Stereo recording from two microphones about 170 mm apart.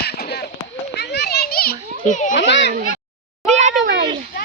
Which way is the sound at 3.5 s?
45° right (ahead or behind).